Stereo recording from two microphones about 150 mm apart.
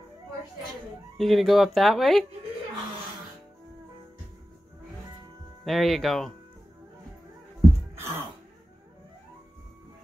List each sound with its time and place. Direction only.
1.1 s speech: centre (ahead or behind)
5.7 s speech: centre (ahead or behind)
7.9 s throat clearing: 15° right (ahead or behind)